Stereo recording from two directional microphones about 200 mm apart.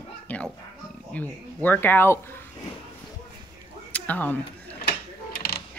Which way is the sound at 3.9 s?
10° left (ahead or behind).